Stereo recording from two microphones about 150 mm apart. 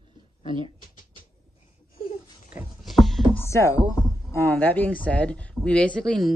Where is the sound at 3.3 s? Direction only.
20° left (ahead or behind).